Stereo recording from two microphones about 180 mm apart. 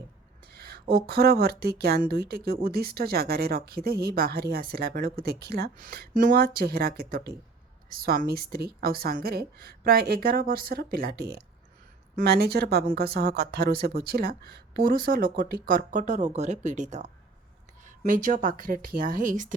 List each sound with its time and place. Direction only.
0.5 s speech: 60° right (ahead or behind)